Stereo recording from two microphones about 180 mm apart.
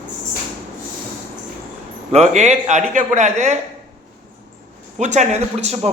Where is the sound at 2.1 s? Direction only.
40° right (ahead or behind).